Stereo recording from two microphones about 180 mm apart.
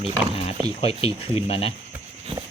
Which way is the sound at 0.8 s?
30° left (ahead or behind).